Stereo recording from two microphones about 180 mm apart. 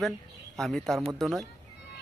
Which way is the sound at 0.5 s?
Centre (ahead or behind).